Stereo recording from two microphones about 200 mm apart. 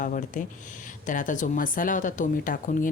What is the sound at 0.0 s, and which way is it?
Speech, 40° left (ahead or behind).